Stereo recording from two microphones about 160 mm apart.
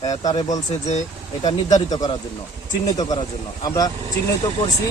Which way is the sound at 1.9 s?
25° left (ahead or behind).